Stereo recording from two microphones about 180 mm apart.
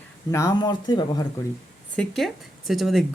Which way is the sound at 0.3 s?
15° left (ahead or behind).